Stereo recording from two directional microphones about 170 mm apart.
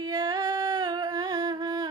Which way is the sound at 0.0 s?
20° right (ahead or behind).